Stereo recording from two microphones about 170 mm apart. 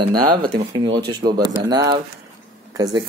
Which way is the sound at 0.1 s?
25° right (ahead or behind).